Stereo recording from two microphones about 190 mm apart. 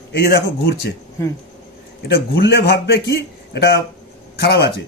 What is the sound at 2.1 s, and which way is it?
A man's voice, 55° left (ahead or behind).